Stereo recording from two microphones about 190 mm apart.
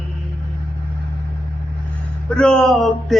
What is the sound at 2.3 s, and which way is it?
Mantra, 5° left (ahead or behind).